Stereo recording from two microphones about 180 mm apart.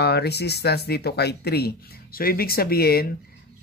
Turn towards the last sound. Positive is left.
turn(degrees=55)  # may be behind; listen again after turning